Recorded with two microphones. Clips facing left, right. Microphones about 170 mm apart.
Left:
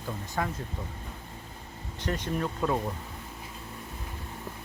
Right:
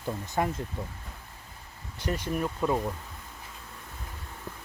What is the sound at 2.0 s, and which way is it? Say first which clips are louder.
Speech: right 1 dB; 10° right (ahead or behind).